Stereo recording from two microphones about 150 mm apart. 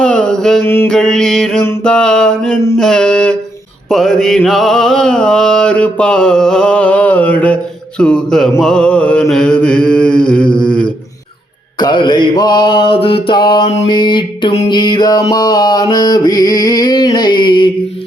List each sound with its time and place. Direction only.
0.0 s mantra: 5° left (ahead or behind)
0.6 s mantra: 15° left (ahead or behind)
0.9 s music: 5° left (ahead or behind)
8.6 s mantra: 5° left (ahead or behind)
11.8 s mantra: 30° left (ahead or behind)
14.7 s music: 30° left (ahead or behind)